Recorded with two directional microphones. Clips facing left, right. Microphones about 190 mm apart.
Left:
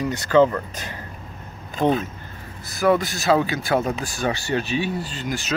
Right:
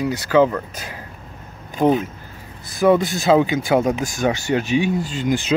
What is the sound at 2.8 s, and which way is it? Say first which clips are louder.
Speech: right 4 dB; 20° right (ahead or behind).